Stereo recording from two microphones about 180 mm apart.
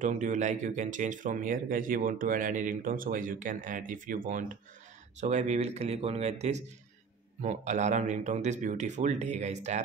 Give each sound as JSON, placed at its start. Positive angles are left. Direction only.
{"t": 0.0, "sound": "speech", "side_deg": -45}